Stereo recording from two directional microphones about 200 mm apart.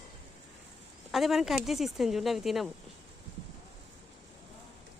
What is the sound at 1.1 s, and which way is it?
Speech, centre (ahead or behind).